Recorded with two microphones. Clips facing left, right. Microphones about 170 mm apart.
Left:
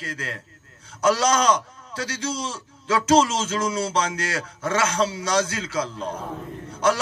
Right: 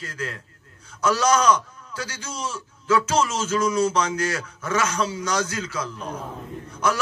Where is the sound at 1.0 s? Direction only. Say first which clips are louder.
Even; 30° left (ahead or behind).